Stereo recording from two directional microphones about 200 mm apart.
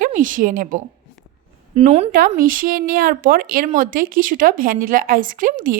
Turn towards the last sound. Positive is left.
turn(degrees=-40)  # may be behind; listen again after turning